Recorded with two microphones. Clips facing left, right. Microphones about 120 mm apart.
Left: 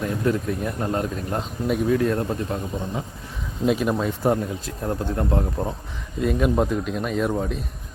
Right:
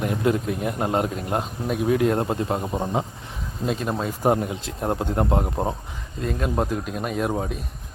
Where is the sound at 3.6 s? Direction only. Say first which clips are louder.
Left 4 dB; centre (ahead or behind).